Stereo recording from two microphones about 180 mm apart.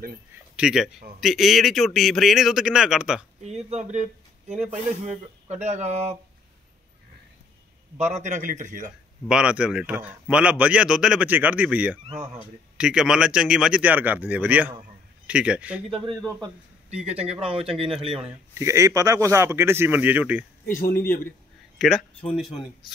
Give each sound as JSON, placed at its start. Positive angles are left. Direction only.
{"t": 0.3, "sound": "speech", "side_deg": -5}
{"t": 3.7, "sound": "speech", "side_deg": -40}
{"t": 8.0, "sound": "a man's voice", "side_deg": -40}
{"t": 9.3, "sound": "a man's voice", "side_deg": -5}
{"t": 16.9, "sound": "speech", "side_deg": -35}
{"t": 18.2, "sound": "a man's voice", "side_deg": -15}
{"t": 20.9, "sound": "a man's voice", "side_deg": 10}
{"t": 21.7, "sound": "speech", "side_deg": 0}